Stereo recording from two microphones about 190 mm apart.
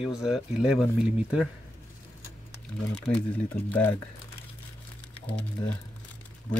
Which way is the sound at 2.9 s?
5° left (ahead or behind).